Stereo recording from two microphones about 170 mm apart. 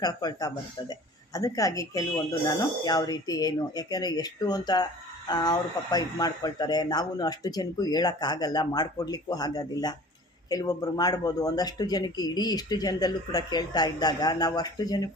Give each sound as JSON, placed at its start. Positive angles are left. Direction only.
{"t": 0.0, "sound": "a woman's voice", "side_deg": 25}